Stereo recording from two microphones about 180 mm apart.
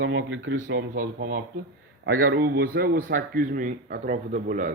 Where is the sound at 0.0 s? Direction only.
80° right.